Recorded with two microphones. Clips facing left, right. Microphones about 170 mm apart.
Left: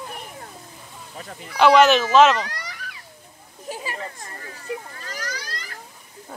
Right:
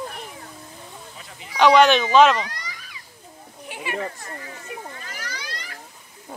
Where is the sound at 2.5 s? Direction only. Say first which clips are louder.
Left 2 dB; 65° left (ahead or behind).